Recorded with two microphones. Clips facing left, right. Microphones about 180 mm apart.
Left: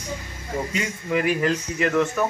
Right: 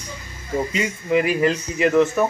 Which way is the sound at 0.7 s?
5° right (ahead or behind).